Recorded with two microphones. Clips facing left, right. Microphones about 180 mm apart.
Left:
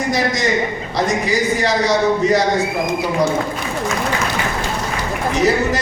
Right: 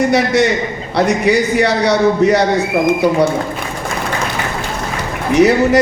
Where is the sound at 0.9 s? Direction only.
65° right (ahead or behind).